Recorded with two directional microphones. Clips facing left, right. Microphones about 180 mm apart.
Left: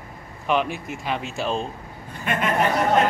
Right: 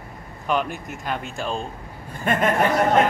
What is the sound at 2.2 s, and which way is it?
Speech, 45° right (ahead or behind).